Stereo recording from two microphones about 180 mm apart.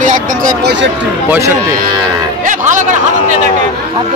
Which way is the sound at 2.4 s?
45° right (ahead or behind).